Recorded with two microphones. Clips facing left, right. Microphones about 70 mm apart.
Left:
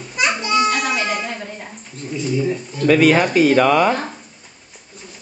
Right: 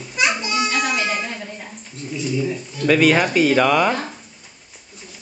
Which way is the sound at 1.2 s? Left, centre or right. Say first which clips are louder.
Left 2 dB; left.